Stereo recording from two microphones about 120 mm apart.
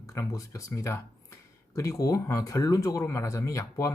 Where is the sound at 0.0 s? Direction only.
25° left (ahead or behind).